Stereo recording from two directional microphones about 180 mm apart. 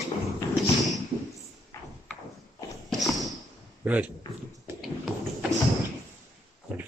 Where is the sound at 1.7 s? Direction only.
15° left (ahead or behind).